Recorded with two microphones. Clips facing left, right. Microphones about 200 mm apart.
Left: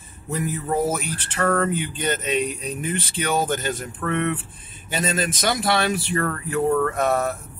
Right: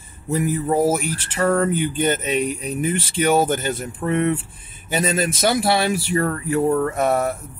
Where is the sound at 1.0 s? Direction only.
10° right (ahead or behind).